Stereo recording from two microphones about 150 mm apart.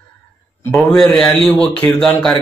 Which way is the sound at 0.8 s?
5° left (ahead or behind).